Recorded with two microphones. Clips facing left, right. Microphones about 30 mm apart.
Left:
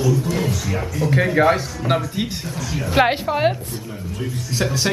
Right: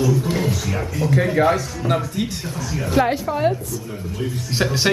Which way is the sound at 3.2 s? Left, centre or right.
Left.